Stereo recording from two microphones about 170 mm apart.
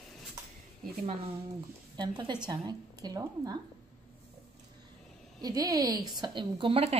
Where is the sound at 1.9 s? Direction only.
25° right (ahead or behind).